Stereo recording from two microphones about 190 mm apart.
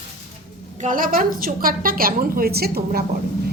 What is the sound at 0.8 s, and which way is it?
A woman's voice, 45° right (ahead or behind).